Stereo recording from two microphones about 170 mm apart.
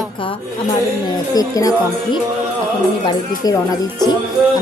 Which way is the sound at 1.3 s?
20° left (ahead or behind).